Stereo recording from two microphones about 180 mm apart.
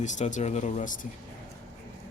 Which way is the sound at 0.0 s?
40° left (ahead or behind).